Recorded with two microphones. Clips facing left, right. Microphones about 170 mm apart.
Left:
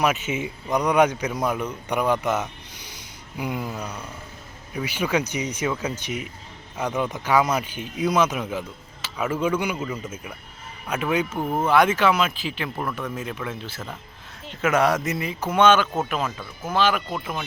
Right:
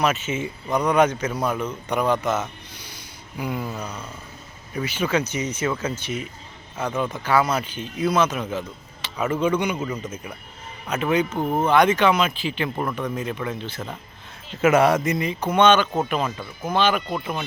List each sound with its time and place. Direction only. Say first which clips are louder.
0.0 s a man's voice: even; 15° left (ahead or behind)
12.7 s speech: right 3 dB; 10° right (ahead or behind)